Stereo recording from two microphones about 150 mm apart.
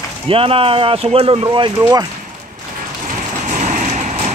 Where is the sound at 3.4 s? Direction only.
55° right (ahead or behind).